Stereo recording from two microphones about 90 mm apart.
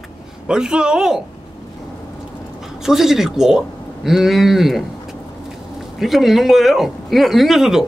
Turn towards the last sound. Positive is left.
turn(degrees=-5)  # may be behind; listen again after turning